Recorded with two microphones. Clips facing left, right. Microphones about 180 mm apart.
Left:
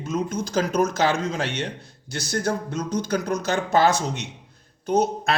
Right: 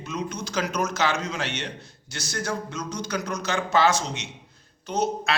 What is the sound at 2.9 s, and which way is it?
A man's voice, 55° left (ahead or behind).